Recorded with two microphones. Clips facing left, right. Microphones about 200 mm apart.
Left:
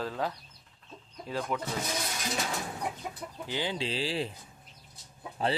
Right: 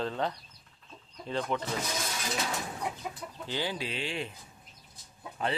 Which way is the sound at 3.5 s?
20° left (ahead or behind).